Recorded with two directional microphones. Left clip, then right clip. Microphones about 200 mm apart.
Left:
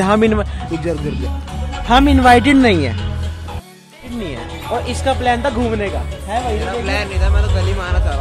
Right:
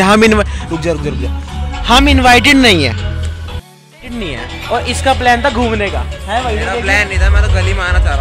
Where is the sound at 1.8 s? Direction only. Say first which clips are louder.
Right 2 dB; 15° left (ahead or behind).